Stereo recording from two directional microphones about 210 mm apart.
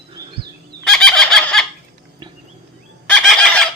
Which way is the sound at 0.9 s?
Centre (ahead or behind).